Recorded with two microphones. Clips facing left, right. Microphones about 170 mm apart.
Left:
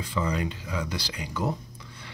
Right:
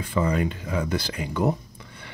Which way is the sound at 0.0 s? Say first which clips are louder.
Right 5 dB; 55° right (ahead or behind).